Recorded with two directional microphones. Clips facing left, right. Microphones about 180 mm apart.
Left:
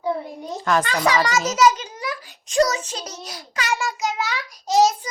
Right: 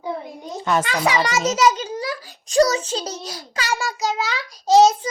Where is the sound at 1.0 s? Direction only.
20° right (ahead or behind).